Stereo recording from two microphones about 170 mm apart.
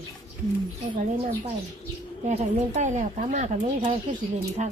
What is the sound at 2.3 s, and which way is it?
Speech, 45° right (ahead or behind).